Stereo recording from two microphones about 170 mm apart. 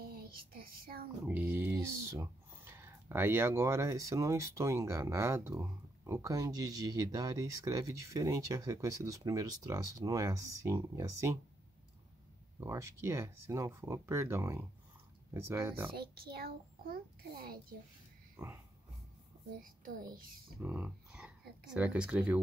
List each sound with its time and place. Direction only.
0.0 s child singing: 60° right (ahead or behind)
1.2 s speech: 10° right (ahead or behind)
12.5 s speech: 15° right (ahead or behind)
15.9 s a child's voice: 65° right (ahead or behind)
18.3 s a sound: 15° right (ahead or behind)
19.6 s a child's voice: 55° right (ahead or behind)
20.6 s speech: 5° right (ahead or behind)